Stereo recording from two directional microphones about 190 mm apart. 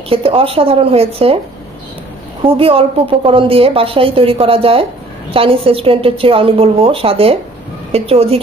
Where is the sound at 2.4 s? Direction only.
30° right (ahead or behind).